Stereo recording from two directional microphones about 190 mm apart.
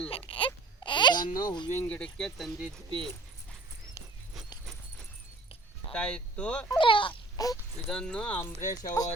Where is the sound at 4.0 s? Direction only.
15° left (ahead or behind).